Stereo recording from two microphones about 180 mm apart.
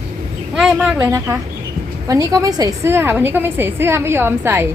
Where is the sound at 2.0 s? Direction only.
20° right (ahead or behind).